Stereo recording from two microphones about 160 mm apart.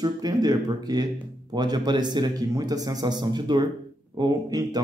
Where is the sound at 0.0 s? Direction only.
25° right (ahead or behind).